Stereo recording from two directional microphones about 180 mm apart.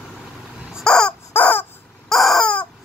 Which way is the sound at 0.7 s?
5° left (ahead or behind).